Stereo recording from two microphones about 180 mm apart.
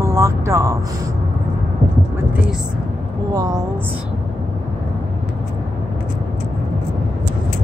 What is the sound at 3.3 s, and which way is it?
Speech, 20° right (ahead or behind).